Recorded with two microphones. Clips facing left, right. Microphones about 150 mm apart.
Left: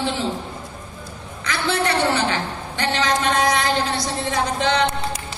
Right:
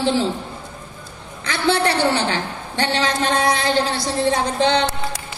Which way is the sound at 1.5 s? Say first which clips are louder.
Right 3 dB; 30° right (ahead or behind).